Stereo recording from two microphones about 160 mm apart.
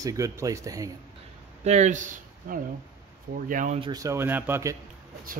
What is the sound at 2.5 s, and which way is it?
Speech, 60° right (ahead or behind).